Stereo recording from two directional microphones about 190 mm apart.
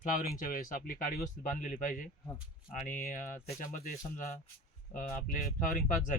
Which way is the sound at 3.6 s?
45° left (ahead or behind).